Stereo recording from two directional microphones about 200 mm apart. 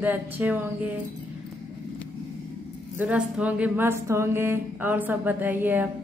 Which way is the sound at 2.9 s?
5° right (ahead or behind).